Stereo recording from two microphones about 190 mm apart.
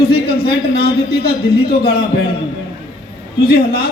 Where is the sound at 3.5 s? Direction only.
55° left (ahead or behind).